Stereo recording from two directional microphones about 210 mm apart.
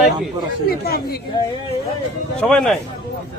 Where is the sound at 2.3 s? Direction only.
5° left (ahead or behind).